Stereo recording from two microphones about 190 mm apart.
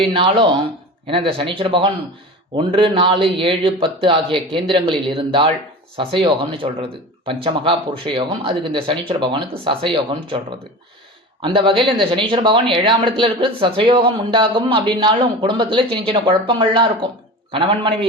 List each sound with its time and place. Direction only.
0.0 s speech: 25° right (ahead or behind)